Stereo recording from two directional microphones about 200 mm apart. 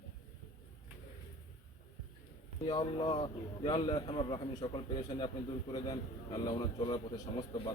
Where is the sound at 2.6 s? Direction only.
20° left (ahead or behind).